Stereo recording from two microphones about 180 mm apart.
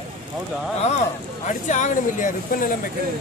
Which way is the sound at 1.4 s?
40° left (ahead or behind).